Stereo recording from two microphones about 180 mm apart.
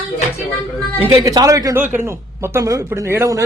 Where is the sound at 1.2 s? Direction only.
20° right (ahead or behind).